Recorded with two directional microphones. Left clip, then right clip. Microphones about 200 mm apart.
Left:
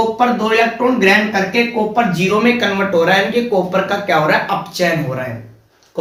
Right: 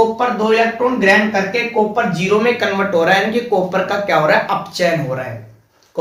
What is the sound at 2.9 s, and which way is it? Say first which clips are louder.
Speech: left 1 dB; 30° right (ahead or behind).